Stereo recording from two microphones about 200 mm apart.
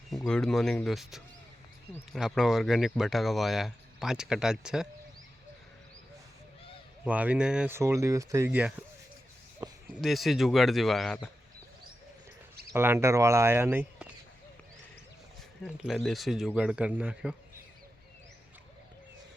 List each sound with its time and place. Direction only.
0.1 s speech: centre (ahead or behind)
7.0 s speech: 5° right (ahead or behind)
9.6 s a sound: 15° right (ahead or behind)
10.0 s speech: centre (ahead or behind)
12.7 s speech: 10° right (ahead or behind)
15.6 s speech: centre (ahead or behind)